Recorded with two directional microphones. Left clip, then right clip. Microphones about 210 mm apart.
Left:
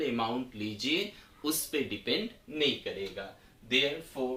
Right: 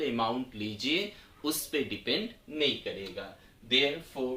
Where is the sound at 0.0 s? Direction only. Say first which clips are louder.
Right 1 dB; 10° right (ahead or behind).